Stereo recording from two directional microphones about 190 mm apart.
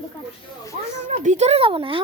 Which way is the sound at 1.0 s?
40° right (ahead or behind).